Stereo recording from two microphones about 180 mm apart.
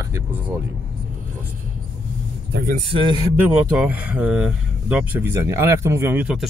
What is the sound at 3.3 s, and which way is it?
Speech, 10° right (ahead or behind).